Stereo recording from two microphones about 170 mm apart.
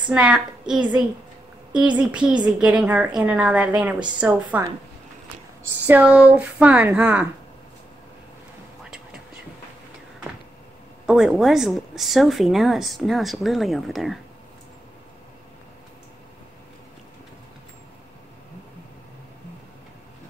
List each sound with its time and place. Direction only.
0.1 s a woman's voice: 5° right (ahead or behind)
5.9 s a woman's voice: 10° right (ahead or behind)
11.1 s speech: 5° right (ahead or behind)